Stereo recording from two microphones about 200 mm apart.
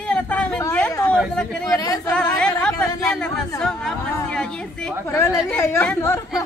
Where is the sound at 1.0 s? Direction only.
5° left (ahead or behind).